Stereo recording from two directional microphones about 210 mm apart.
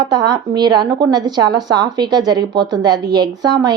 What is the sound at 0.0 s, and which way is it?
A woman's voice, 20° right (ahead or behind).